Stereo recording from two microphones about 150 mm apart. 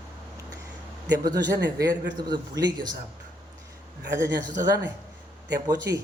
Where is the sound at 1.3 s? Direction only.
25° right (ahead or behind).